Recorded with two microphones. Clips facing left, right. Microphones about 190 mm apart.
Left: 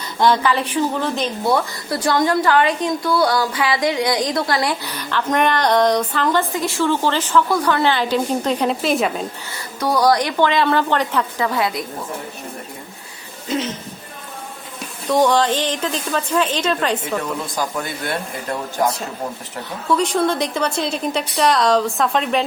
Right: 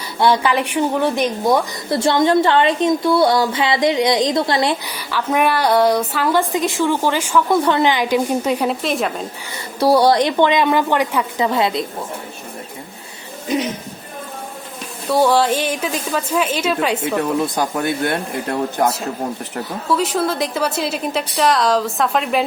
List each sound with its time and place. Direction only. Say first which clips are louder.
0.2 s a woman's voice: right 1 dB; 15° right (ahead or behind)
4.9 s a woman's voice: even; 10° right (ahead or behind)
6.5 s a woman's voice: right 2 dB; 20° right (ahead or behind)
7.5 s a woman's voice: right 2 dB; 25° right (ahead or behind); by 9.2 s centre (ahead or behind)
9.8 s a woman's voice: right 4 dB; 30° right (ahead or behind)
13.5 s a woman's voice: right 3 dB; 15° right (ahead or behind)
15.0 s a woman's voice: right 1 dB; 5° right (ahead or behind)
19.9 s a woman's voice: left 1 dB; 5° right (ahead or behind)